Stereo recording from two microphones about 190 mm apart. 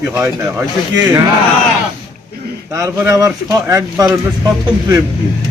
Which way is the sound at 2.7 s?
15° right (ahead or behind).